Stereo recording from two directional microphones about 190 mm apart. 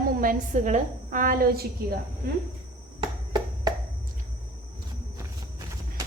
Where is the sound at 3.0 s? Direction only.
20° right (ahead or behind).